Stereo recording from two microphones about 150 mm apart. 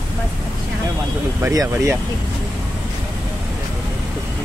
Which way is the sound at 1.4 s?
20° right (ahead or behind).